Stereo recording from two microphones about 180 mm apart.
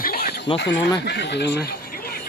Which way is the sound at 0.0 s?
60° left (ahead or behind).